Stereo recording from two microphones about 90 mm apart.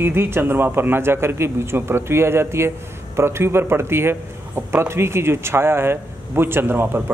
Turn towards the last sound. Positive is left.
turn(degrees=-25)  # may be behind; listen again after turning